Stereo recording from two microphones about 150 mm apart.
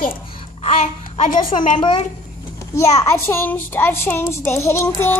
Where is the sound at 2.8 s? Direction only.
20° left (ahead or behind).